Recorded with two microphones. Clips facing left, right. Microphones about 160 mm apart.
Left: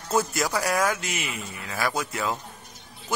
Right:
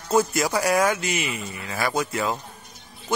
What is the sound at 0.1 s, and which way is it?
A man's voice, centre (ahead or behind).